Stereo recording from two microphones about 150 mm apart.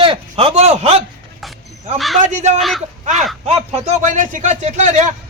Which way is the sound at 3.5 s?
45° right (ahead or behind).